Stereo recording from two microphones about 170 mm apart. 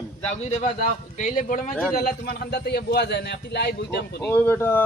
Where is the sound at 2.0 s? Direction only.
60° left (ahead or behind); by 4.2 s 75° left (ahead or behind).